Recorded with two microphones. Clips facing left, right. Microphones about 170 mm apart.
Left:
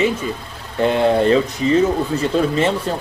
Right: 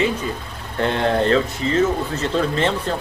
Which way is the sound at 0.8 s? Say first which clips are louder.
Left 4 dB; 10° left (ahead or behind).